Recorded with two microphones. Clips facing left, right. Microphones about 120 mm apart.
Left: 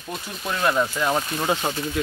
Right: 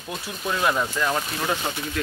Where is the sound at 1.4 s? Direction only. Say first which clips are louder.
Left 3 dB; 20° left (ahead or behind).